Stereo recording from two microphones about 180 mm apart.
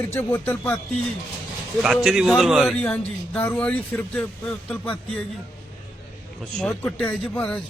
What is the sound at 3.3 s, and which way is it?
A man's voice, 10° left (ahead or behind).